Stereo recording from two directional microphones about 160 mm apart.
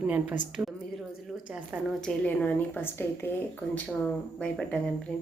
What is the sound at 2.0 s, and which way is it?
A woman's voice, 10° left (ahead or behind).